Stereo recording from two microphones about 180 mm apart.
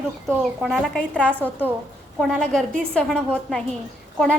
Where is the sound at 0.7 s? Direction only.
5° left (ahead or behind).